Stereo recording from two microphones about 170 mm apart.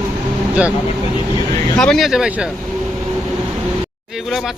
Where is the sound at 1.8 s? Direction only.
Centre (ahead or behind).